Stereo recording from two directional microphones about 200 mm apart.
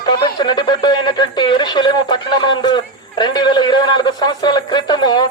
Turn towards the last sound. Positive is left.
turn(degrees=20)  # may be behind; listen again after turning